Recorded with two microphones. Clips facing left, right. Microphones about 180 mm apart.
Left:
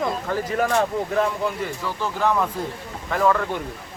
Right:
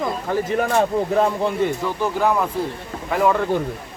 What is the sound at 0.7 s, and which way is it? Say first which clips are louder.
Speech: right 3 dB; 25° right (ahead or behind).